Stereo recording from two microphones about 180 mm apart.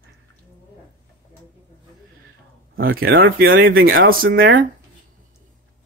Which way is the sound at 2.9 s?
60° right (ahead or behind).